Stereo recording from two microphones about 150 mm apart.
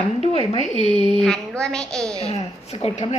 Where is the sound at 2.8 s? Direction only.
45° left (ahead or behind).